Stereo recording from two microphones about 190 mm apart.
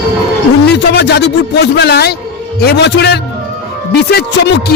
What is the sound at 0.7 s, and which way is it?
Speech, 60° left (ahead or behind).